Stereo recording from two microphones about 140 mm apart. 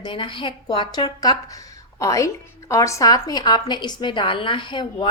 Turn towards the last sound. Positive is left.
turn(degrees=35)  # may be behind; listen again after turning